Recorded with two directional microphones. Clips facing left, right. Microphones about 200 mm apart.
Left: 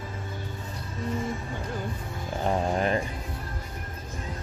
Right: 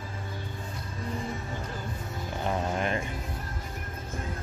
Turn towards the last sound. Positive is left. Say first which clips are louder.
# left 4 dB
turn(degrees=35)  # may be behind; listen again after turning